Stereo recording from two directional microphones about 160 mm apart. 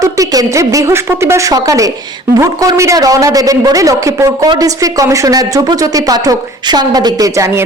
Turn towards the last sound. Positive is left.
turn(degrees=-20)  # may be behind; listen again after turning